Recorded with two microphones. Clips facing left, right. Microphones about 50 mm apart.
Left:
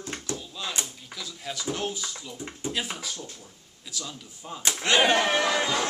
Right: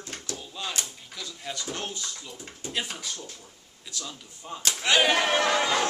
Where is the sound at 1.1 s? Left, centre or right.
Centre.